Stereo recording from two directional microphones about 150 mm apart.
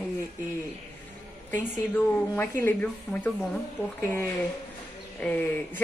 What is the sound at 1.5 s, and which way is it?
A woman's voice, 10° left (ahead or behind).